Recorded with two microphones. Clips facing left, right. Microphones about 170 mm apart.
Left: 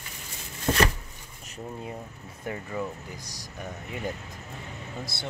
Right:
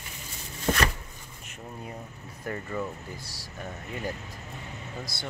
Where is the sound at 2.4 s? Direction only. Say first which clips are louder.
Even; 15° left (ahead or behind).